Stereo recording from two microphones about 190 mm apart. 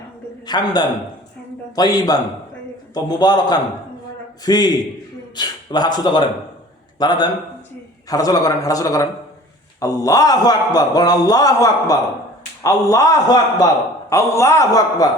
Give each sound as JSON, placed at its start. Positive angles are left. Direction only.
{"t": 0.4, "sound": "a man's voice", "side_deg": 20}